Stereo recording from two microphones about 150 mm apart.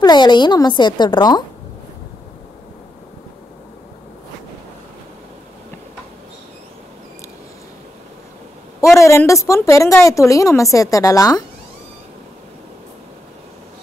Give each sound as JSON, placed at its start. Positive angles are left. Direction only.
{"t": 0.0, "sound": "a woman's voice", "side_deg": 30}
{"t": 9.0, "sound": "a woman's voice", "side_deg": 20}